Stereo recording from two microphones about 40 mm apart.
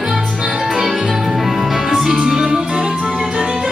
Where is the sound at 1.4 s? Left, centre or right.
Centre.